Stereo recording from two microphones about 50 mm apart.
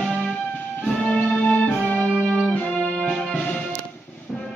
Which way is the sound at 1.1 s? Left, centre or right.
Left.